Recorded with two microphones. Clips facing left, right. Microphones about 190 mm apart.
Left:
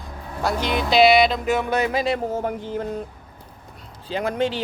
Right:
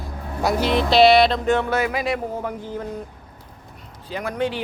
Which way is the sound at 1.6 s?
20° left (ahead or behind).